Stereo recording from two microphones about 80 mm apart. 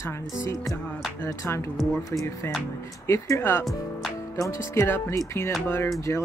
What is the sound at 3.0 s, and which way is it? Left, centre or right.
Speech, left.